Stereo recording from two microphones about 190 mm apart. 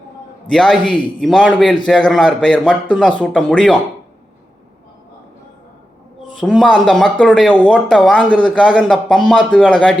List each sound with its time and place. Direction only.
0.5 s speech: centre (ahead or behind)
6.4 s speech: centre (ahead or behind)